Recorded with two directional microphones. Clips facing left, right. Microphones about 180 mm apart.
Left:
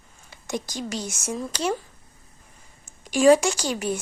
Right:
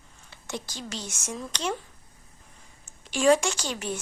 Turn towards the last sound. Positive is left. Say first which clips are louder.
# left 5 dB
turn(degrees=10)  # may be behind; listen again after turning